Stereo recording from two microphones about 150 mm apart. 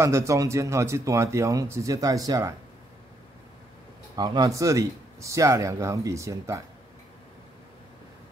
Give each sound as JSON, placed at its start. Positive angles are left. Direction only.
{"t": 0.0, "sound": "speech", "side_deg": -20}
{"t": 4.2, "sound": "speech", "side_deg": -25}